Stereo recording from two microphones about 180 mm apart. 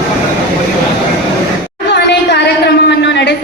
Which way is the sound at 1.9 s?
70° left (ahead or behind).